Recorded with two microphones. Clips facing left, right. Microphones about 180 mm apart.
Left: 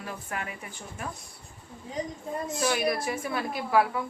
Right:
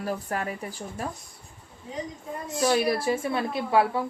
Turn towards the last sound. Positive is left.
turn(degrees=-25)  # may be behind; listen again after turning